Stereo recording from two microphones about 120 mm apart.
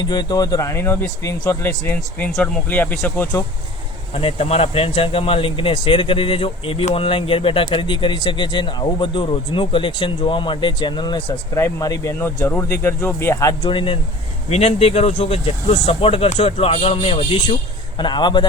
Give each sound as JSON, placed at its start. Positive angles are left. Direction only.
{"t": 0.0, "sound": "speech", "side_deg": 35}
{"t": 4.1, "sound": "speech", "side_deg": 55}
{"t": 11.5, "sound": "speech", "side_deg": 25}
{"t": 13.7, "sound": "speech", "side_deg": 45}
{"t": 14.5, "sound": "speech", "side_deg": 60}